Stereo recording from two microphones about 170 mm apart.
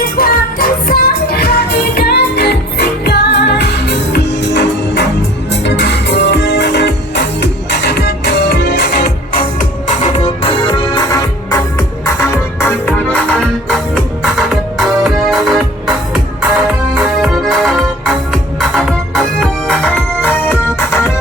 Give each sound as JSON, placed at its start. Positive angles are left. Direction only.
{"t": 0.0, "sound": "music", "side_deg": 60}
{"t": 10.0, "sound": "music", "side_deg": 30}